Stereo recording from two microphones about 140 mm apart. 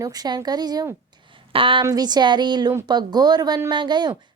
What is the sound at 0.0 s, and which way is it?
A woman's voice, 30° right (ahead or behind).